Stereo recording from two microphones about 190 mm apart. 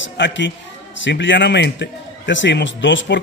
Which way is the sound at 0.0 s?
70° left (ahead or behind).